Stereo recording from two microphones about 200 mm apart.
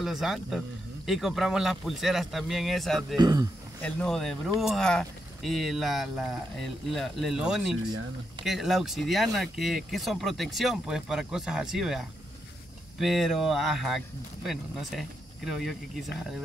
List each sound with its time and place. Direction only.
0.0 s speech: centre (ahead or behind)
3.2 s speech: 20° right (ahead or behind)
3.8 s speech: 5° left (ahead or behind)
13.0 s speech: centre (ahead or behind)